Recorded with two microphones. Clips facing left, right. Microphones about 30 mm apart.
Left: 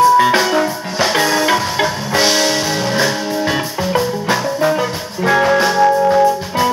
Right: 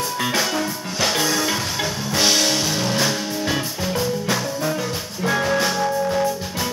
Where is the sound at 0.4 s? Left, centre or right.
Left.